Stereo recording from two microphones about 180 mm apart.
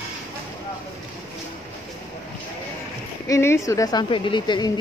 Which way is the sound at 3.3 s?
15° left (ahead or behind).